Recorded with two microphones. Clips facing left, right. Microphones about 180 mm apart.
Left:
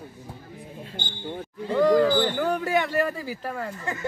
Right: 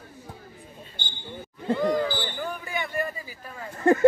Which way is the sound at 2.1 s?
70° left (ahead or behind).